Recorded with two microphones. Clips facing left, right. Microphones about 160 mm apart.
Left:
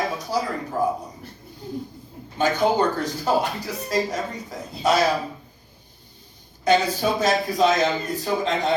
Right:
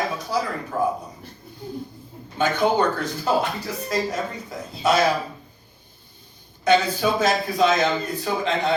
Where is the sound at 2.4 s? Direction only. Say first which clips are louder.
Even; 35° left (ahead or behind).